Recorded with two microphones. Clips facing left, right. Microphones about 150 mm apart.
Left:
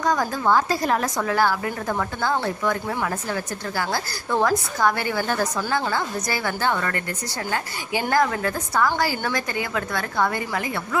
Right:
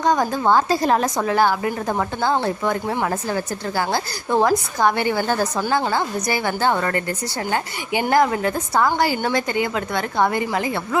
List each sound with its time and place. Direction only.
0.0 s a woman's voice: 25° right (ahead or behind)
8.1 s a woman's voice: 20° right (ahead or behind)